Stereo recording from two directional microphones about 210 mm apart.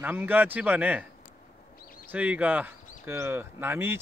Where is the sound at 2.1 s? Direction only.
5° right (ahead or behind).